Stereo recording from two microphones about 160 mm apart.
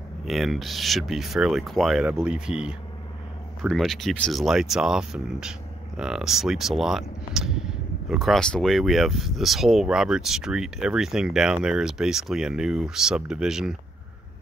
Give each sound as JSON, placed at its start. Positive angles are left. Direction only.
{"t": 0.2, "sound": "speech", "side_deg": 0}